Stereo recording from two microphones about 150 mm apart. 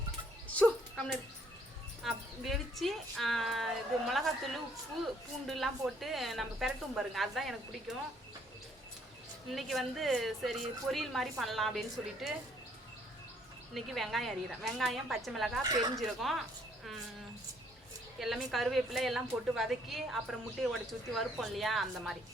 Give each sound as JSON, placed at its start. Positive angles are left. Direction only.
{"t": 0.4, "sound": "music", "side_deg": 5}
{"t": 2.0, "sound": "speech", "side_deg": 0}
{"t": 5.5, "sound": "speech", "side_deg": 0}
{"t": 9.5, "sound": "speech", "side_deg": 0}
{"t": 13.7, "sound": "speech", "side_deg": 0}
{"t": 15.6, "sound": "speech", "side_deg": -25}
{"t": 16.0, "sound": "speech", "side_deg": 0}
{"t": 18.2, "sound": "speech", "side_deg": 0}